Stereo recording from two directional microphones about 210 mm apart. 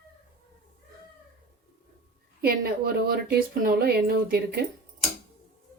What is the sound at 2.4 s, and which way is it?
Speech, 45° right (ahead or behind).